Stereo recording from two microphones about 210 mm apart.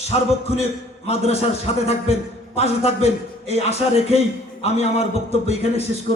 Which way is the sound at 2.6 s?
30° left (ahead or behind).